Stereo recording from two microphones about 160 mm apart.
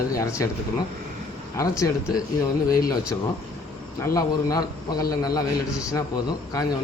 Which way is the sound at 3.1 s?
15° left (ahead or behind).